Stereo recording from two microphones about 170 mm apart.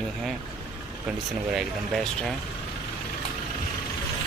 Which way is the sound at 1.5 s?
Centre (ahead or behind).